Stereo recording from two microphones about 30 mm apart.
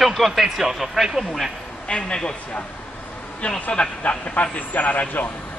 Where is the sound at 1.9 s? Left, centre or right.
Left.